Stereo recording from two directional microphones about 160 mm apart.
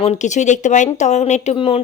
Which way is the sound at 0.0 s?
45° left (ahead or behind).